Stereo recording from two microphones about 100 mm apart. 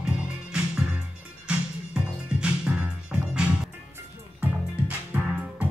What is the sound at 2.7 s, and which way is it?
Music, 15° right (ahead or behind).